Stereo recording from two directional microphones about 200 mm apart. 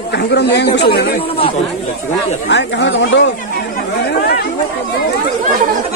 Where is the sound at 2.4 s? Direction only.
60° left (ahead or behind).